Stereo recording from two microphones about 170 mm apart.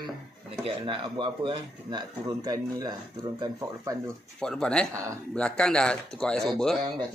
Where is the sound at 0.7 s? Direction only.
30° right (ahead or behind).